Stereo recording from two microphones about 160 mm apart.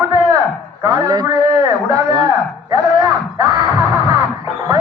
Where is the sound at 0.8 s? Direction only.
25° right (ahead or behind).